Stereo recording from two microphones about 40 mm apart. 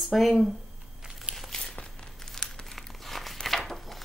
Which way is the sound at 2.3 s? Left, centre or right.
Centre.